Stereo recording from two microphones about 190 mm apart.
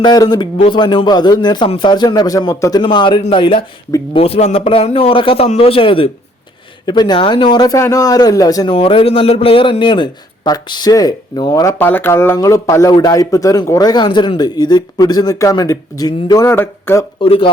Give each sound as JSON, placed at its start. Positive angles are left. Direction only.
{"t": 0.0, "sound": "a man's voice", "side_deg": 20}
{"t": 17.2, "sound": "a man's voice", "side_deg": 30}